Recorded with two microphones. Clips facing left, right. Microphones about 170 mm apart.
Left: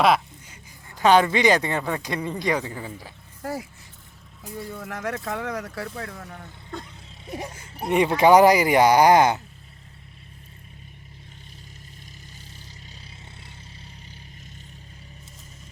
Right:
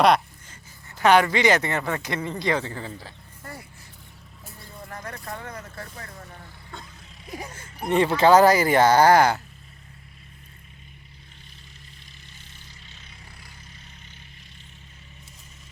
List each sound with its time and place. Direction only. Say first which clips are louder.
0.0 s speech: right 1 dB; 5° left (ahead or behind)
4.8 s speech: left 5 dB; 90° left
7.9 s speech: left 1 dB; 15° left (ahead or behind)